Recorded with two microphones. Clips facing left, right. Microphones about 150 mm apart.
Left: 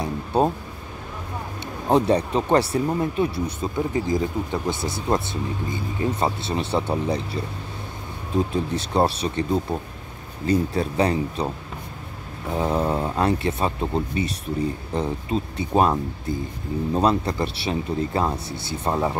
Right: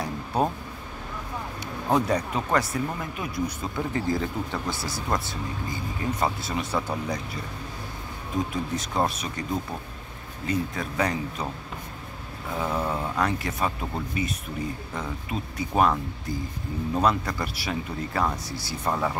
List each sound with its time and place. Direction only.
0.0 s a sound: 25° left (ahead or behind)
1.9 s speech: 30° left (ahead or behind)
3.6 s speech: 20° left (ahead or behind)
8.7 s speech: 30° left (ahead or behind)
12.5 s speech: 30° left (ahead or behind)